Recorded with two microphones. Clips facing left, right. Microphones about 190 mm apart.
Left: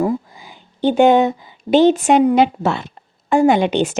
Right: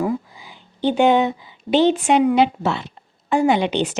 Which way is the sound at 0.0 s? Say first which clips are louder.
Left 3 dB; 45° left (ahead or behind).